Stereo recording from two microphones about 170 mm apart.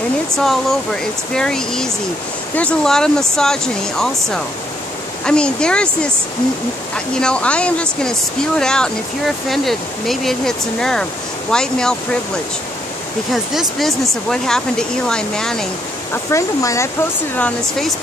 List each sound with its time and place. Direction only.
0.4 s speech: centre (ahead or behind)
7.2 s speech: 5° left (ahead or behind)
13.3 s speech: centre (ahead or behind)
16.1 s speech: 15° left (ahead or behind)
17.4 s speech: 5° left (ahead or behind)